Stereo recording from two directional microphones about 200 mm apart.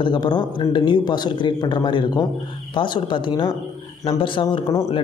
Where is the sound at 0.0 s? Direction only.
25° left (ahead or behind).